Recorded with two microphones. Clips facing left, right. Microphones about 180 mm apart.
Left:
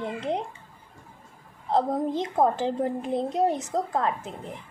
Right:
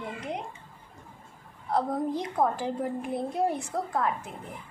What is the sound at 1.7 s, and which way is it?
A woman's voice, 20° left (ahead or behind).